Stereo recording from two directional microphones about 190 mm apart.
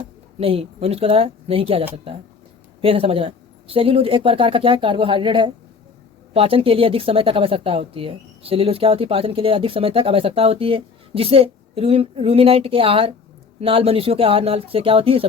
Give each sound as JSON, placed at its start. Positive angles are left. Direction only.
{"t": 0.3, "sound": "speech", "side_deg": -30}
{"t": 2.8, "sound": "speech", "side_deg": -30}